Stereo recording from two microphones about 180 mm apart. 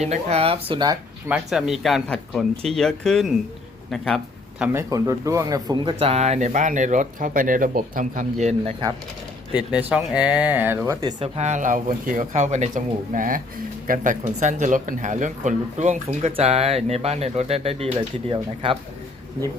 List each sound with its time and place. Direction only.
0.0 s speech: 35° right (ahead or behind)
1.3 s speech: 5° right (ahead or behind)
4.6 s speech: 15° right (ahead or behind); by 8.7 s 40° right (ahead or behind)
9.6 s speech: 5° right (ahead or behind)
11.0 s speech: 35° right (ahead or behind)